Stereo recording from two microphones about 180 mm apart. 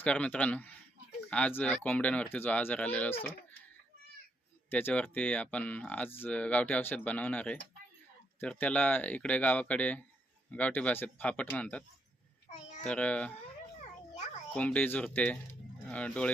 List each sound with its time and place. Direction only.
0.0 s speech: 5° left (ahead or behind)
4.7 s speech: 10° left (ahead or behind)
12.5 s a sound: 40° left (ahead or behind)
12.8 s speech: 5° left (ahead or behind)
14.5 s speech: 10° left (ahead or behind)